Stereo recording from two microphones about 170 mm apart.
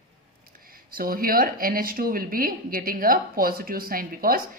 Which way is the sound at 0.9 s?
60° right (ahead or behind).